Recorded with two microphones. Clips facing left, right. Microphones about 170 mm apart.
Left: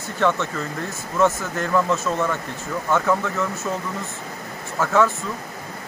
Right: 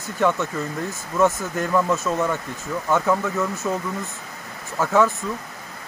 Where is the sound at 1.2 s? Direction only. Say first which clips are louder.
Even; 10° right (ahead or behind).